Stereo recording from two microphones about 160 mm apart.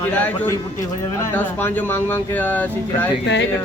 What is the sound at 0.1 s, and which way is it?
Speech, 10° left (ahead or behind).